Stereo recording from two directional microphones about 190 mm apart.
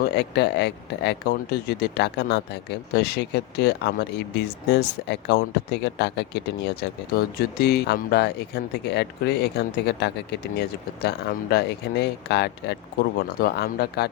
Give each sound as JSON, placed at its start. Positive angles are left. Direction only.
{"t": 0.0, "sound": "speech", "side_deg": 60}